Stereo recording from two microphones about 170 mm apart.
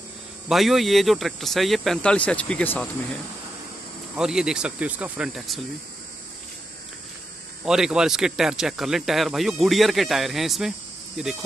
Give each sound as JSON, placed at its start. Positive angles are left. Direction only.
{"t": 0.5, "sound": "speech", "side_deg": 0}
{"t": 4.2, "sound": "speech", "side_deg": -5}
{"t": 7.6, "sound": "speech", "side_deg": -5}